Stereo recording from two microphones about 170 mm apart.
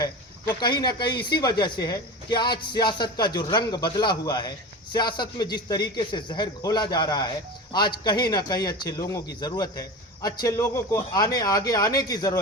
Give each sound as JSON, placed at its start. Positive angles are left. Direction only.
{"t": 0.6, "sound": "speech", "side_deg": 25}